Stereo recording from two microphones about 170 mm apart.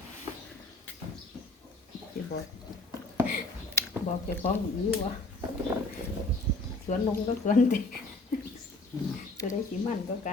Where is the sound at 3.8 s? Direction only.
15° left (ahead or behind).